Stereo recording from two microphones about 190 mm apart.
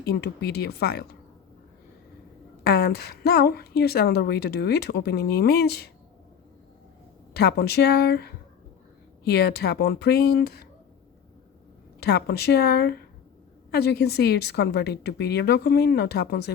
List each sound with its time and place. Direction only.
0.0 s a woman's voice: 60° left (ahead or behind)
2.6 s a woman's voice: 55° left (ahead or behind)
7.3 s a woman's voice: 60° left (ahead or behind)
11.9 s a woman's voice: 60° left (ahead or behind)